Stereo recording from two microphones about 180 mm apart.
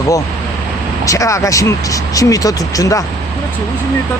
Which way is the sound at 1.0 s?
20° left (ahead or behind).